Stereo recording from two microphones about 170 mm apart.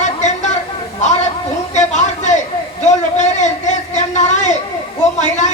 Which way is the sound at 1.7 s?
45° left (ahead or behind).